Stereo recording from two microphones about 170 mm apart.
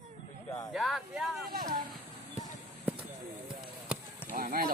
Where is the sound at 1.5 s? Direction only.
60° right (ahead or behind).